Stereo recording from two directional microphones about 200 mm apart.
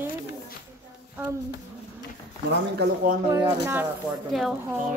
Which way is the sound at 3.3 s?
15° right (ahead or behind).